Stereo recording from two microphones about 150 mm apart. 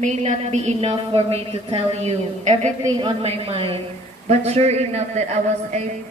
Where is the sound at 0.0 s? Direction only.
50° right (ahead or behind).